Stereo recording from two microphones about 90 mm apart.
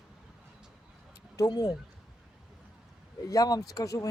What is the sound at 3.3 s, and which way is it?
Speech, 45° left (ahead or behind).